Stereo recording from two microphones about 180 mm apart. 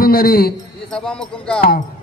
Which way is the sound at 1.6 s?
50° left (ahead or behind).